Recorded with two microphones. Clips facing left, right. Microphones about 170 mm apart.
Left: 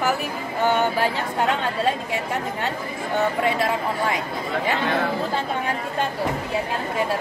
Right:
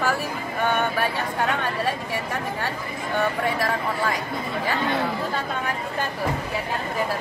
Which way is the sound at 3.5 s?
25° left (ahead or behind).